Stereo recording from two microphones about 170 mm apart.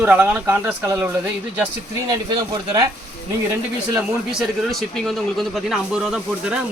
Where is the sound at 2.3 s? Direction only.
25° right (ahead or behind).